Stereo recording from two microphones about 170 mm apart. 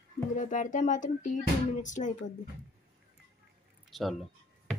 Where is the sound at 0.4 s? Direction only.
50° left (ahead or behind).